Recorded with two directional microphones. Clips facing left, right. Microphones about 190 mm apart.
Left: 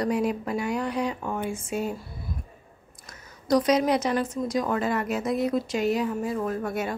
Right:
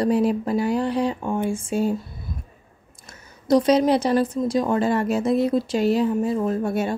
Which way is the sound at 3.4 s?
30° right (ahead or behind).